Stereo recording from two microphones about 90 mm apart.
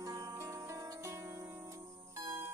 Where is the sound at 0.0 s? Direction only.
40° right (ahead or behind).